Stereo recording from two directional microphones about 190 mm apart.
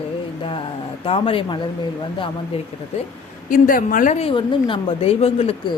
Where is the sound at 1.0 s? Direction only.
30° left (ahead or behind).